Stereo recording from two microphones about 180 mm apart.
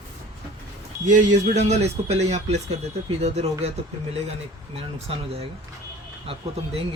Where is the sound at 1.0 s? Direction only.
45° right (ahead or behind).